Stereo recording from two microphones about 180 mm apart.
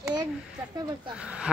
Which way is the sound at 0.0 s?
25° right (ahead or behind).